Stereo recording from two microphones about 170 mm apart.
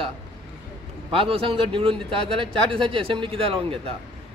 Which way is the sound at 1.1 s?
30° right (ahead or behind).